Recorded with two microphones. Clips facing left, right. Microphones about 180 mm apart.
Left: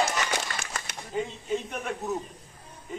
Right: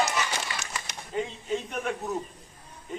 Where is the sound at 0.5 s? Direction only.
55° left (ahead or behind).